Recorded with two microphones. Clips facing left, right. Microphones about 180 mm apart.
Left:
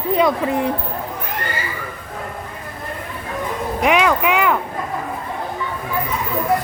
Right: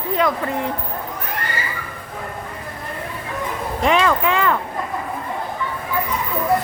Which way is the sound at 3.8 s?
15° left (ahead or behind).